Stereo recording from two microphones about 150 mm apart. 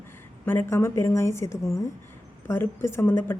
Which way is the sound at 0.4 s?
15° left (ahead or behind).